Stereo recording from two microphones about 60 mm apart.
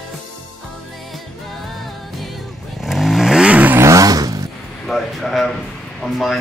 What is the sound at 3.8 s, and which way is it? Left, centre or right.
Vehicle, right.